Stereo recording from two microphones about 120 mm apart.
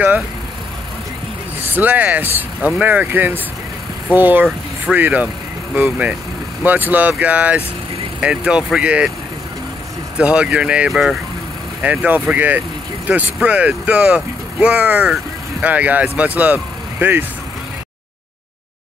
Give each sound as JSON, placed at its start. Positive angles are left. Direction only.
{"t": 1.6, "sound": "speech", "side_deg": -15}
{"t": 10.1, "sound": "speech", "side_deg": -10}